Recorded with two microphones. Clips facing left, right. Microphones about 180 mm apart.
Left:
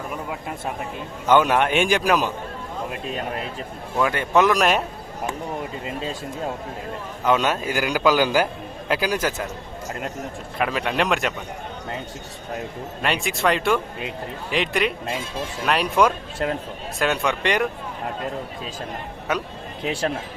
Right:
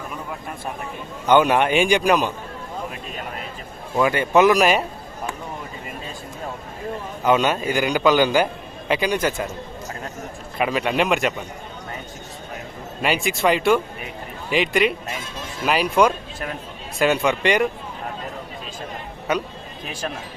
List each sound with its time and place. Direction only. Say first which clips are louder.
1.3 s a man's voice: right 1 dB; centre (ahead or behind)
3.9 s a man's voice: right 3 dB; 5° right (ahead or behind)
7.3 s a man's voice: right 2 dB; centre (ahead or behind)
10.6 s a man's voice: right 2 dB; 5° right (ahead or behind)
13.0 s a man's voice: right 2 dB; centre (ahead or behind)